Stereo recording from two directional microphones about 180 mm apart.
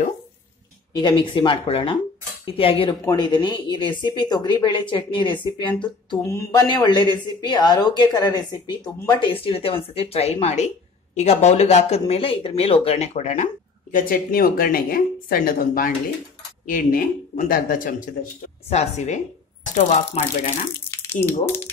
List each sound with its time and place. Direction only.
0.9 s speech: 25° left (ahead or behind)
6.2 s speech: 15° left (ahead or behind); by 13.5 s 40° left (ahead or behind)
13.9 s speech: 55° left (ahead or behind)
18.7 s speech: 35° left (ahead or behind)
21.0 s speech: 15° left (ahead or behind)